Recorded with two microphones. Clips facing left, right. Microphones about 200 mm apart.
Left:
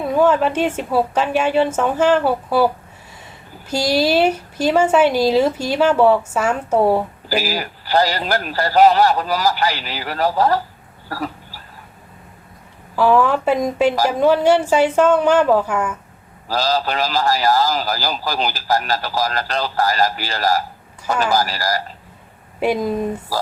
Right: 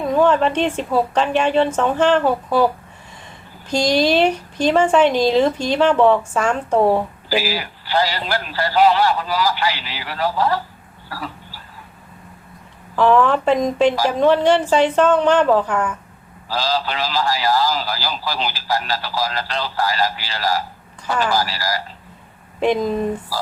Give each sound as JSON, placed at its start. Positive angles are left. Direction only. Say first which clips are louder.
{"t": 0.0, "sound": "speech", "louder": "even", "side_deg": 5}
{"t": 3.7, "sound": "speech", "louder": "right 1 dB", "side_deg": 5}
{"t": 7.3, "sound": "a man's voice", "louder": "right 1 dB", "side_deg": 40}
{"t": 13.0, "sound": "speech", "louder": "even", "side_deg": 5}
{"t": 16.5, "sound": "a man's voice", "louder": "left 2 dB", "side_deg": 45}
{"t": 22.6, "sound": "speech", "louder": "right 1 dB", "side_deg": 10}